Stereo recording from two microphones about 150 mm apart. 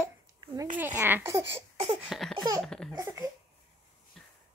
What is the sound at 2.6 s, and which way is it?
Baby laughter, 5° left (ahead or behind).